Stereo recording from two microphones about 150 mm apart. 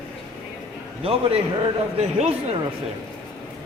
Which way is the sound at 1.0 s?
40° right (ahead or behind).